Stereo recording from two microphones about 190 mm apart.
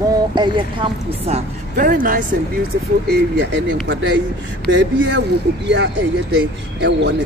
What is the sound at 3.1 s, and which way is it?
Speech, 65° right (ahead or behind).